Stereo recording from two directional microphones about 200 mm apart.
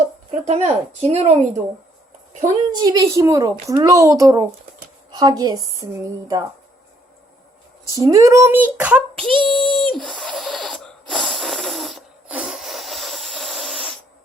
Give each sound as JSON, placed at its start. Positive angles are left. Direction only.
{"t": 0.3, "sound": "speech", "side_deg": -30}
{"t": 2.4, "sound": "a child's voice", "side_deg": -20}
{"t": 7.9, "sound": "a child's voice", "side_deg": -15}
{"t": 9.4, "sound": "speech", "side_deg": -25}
{"t": 9.9, "sound": "a sound", "side_deg": 0}